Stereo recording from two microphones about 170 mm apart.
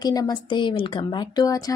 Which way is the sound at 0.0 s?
25° left (ahead or behind).